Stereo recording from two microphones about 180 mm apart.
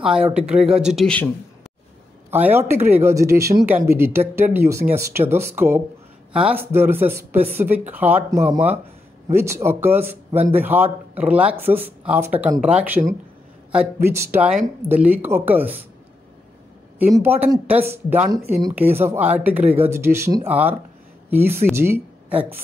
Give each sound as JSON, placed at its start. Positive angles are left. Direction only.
{"t": 0.3, "sound": "speech", "side_deg": -5}
{"t": 2.3, "sound": "speech", "side_deg": -10}
{"t": 17.0, "sound": "speech", "side_deg": -10}